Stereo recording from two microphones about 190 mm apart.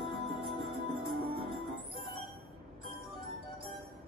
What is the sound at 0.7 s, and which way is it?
Music, 55° right (ahead or behind).